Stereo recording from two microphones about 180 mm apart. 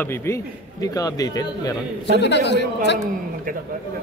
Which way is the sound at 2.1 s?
70° left (ahead or behind).